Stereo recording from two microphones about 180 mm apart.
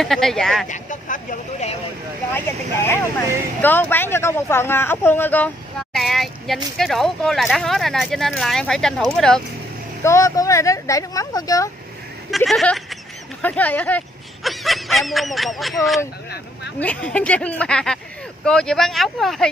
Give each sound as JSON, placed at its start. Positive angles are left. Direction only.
{"t": 0.0, "sound": "speech", "side_deg": 0}
{"t": 0.7, "sound": "speech", "side_deg": 45}
{"t": 2.3, "sound": "speech", "side_deg": 15}
{"t": 10.0, "sound": "speech", "side_deg": 15}
{"t": 12.3, "sound": "speech", "side_deg": 0}